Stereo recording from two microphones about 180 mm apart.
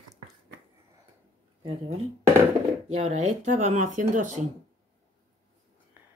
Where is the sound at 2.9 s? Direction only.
40° right (ahead or behind).